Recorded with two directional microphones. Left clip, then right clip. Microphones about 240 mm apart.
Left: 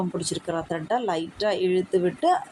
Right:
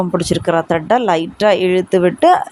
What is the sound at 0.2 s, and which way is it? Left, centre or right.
Speech, right.